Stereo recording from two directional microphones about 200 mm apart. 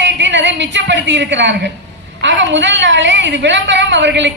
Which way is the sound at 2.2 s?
65° right (ahead or behind).